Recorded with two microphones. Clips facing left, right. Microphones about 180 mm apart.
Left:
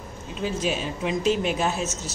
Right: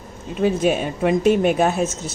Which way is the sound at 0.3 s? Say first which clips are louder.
Right 8 dB; 55° right (ahead or behind).